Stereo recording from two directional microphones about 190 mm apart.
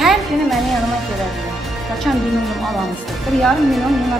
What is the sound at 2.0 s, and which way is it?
Speech, centre (ahead or behind).